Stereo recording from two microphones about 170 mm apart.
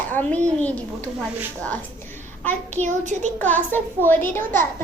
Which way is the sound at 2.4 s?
10° left (ahead or behind).